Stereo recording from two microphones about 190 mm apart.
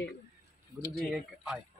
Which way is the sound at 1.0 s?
Centre (ahead or behind).